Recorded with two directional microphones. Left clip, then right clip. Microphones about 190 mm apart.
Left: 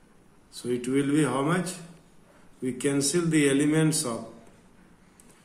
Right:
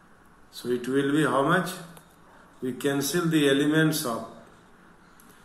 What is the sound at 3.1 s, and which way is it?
Speech, 40° left (ahead or behind).